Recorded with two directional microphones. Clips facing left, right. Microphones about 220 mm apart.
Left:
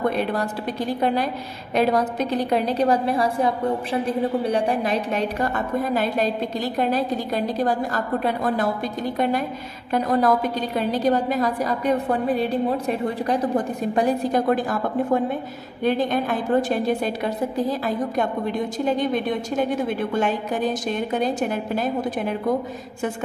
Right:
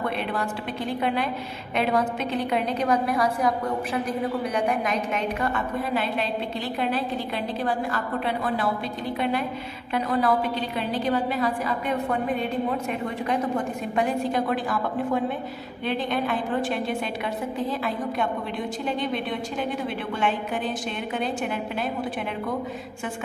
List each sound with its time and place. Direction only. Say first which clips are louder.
0.2 s a woman's voice: left 4 dB; 40° left (ahead or behind)
9.9 s a woman's voice: left 4 dB; 45° left (ahead or behind)
15.8 s a woman's voice: left 5 dB; 45° left (ahead or behind)